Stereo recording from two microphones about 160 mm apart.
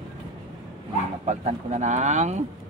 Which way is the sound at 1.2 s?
45° right (ahead or behind).